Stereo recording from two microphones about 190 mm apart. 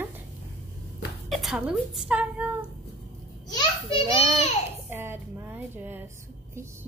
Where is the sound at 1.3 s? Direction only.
Centre (ahead or behind).